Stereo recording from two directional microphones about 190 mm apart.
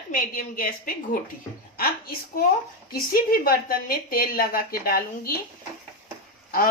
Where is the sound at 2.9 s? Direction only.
50° left (ahead or behind).